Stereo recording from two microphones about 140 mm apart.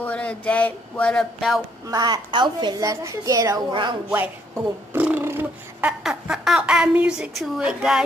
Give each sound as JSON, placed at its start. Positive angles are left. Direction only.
{"t": 0.0, "sound": "speech", "side_deg": 10}
{"t": 1.9, "sound": "a woman's voice", "side_deg": -30}
{"t": 4.1, "sound": "speech", "side_deg": -15}
{"t": 6.0, "sound": "a woman's voice", "side_deg": -5}